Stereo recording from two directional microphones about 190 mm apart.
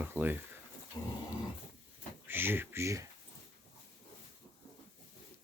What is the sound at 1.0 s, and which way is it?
Dog, 20° left (ahead or behind).